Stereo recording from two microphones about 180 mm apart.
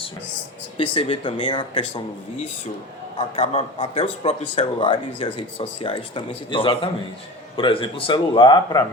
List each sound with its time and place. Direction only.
0.8 s a man's voice: 30° left (ahead or behind)
3.2 s a man's voice: 35° left (ahead or behind)